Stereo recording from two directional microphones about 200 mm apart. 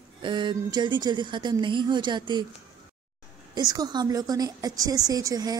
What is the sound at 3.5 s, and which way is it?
Speech, 20° right (ahead or behind).